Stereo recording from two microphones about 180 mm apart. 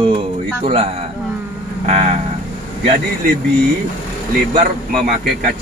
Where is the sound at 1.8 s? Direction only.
35° right (ahead or behind).